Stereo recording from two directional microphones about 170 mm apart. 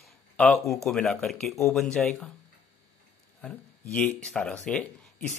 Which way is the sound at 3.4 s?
5° left (ahead or behind).